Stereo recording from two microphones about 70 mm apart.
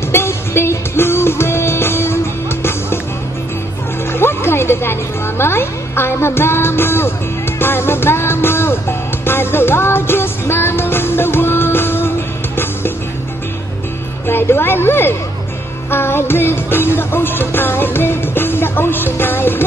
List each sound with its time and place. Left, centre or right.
0.1 s music: left
4.1 s a sound: left
5.4 s music: left
14.2 s a woman's voice: left
15.9 s music: left